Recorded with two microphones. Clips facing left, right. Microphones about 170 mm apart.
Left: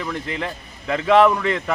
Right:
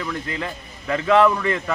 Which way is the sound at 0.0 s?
20° left (ahead or behind).